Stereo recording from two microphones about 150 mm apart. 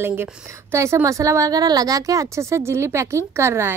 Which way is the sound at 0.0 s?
15° right (ahead or behind).